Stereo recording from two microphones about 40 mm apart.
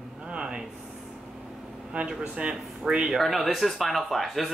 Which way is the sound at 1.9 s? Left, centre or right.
Right.